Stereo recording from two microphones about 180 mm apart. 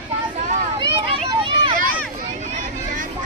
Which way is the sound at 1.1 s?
30° right (ahead or behind).